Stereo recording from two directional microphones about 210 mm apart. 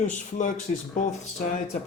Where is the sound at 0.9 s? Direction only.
35° left (ahead or behind).